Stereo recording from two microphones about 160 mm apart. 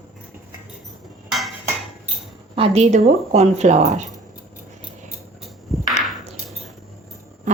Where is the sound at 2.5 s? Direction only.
40° right (ahead or behind).